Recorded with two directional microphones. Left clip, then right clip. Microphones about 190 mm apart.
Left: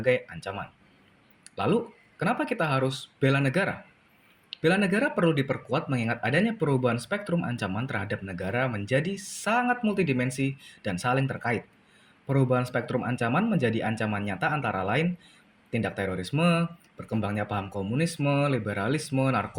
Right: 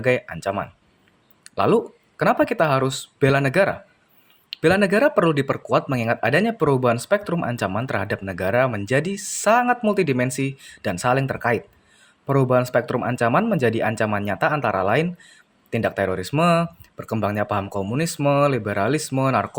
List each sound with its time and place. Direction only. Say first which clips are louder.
0.0 s speech: right 5 dB; 55° right (ahead or behind)